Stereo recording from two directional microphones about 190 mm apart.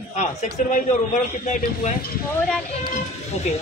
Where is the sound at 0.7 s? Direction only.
40° left (ahead or behind).